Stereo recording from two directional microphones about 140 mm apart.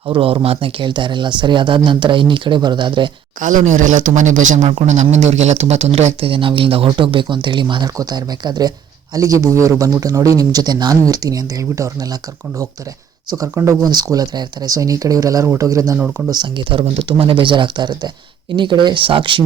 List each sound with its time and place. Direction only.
0.1 s speech: 40° right (ahead or behind)
3.4 s speech: 60° right (ahead or behind)
4.7 s a man's voice: 50° right (ahead or behind); by 12.0 s 20° right (ahead or behind)
13.5 s a man's voice: 20° right (ahead or behind)
16.0 s speech: 10° right (ahead or behind)
16.3 s speech: 30° right (ahead or behind)